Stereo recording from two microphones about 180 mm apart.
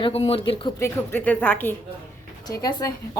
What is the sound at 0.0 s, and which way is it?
Speech, 35° left (ahead or behind).